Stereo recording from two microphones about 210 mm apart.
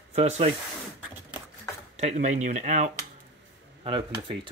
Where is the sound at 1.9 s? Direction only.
30° right (ahead or behind).